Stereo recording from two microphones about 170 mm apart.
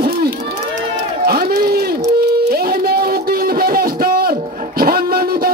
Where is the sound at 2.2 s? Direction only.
65° right (ahead or behind).